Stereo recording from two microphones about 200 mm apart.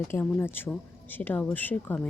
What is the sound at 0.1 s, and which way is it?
Speech, 10° left (ahead or behind).